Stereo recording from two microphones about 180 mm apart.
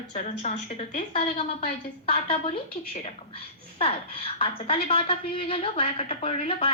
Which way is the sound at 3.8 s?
30° left (ahead or behind).